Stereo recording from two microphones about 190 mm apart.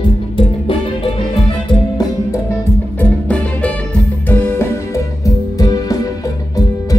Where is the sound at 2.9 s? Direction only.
5° left (ahead or behind).